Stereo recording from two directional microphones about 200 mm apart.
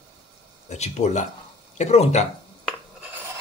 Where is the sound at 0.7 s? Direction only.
35° left (ahead or behind).